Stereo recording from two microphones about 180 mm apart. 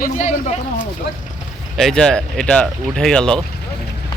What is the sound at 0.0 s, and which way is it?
Speech, 45° left (ahead or behind).